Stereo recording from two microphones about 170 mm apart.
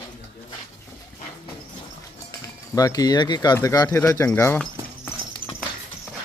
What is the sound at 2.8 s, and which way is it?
Speech, 20° left (ahead or behind).